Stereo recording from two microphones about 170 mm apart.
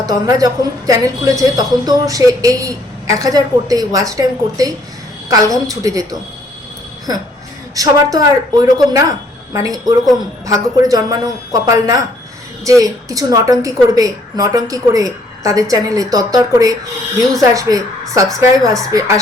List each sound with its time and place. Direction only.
0.0 s a woman's voice: 20° right (ahead or behind)
7.8 s a woman's voice: 20° right (ahead or behind)